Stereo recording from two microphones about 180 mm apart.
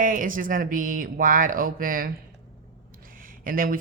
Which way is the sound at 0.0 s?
50° right (ahead or behind).